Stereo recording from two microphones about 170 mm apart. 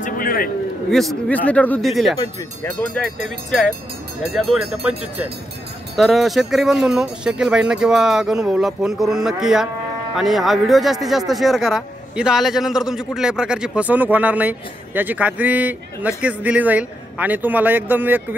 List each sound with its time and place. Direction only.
0.0 s a sound: 60° left (ahead or behind)
0.9 s speech: 5° left (ahead or behind)
3.4 s speech: centre (ahead or behind)